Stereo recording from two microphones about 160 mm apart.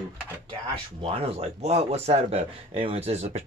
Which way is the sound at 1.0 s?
40° right (ahead or behind).